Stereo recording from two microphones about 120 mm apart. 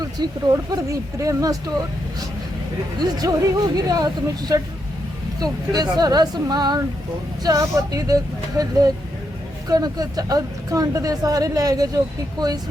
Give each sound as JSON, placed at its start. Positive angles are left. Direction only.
{"t": 0.0, "sound": "speech", "side_deg": -30}
{"t": 3.0, "sound": "a woman's voice", "side_deg": -30}